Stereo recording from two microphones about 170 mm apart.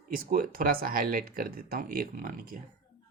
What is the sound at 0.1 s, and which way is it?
Speech, 55° right (ahead or behind).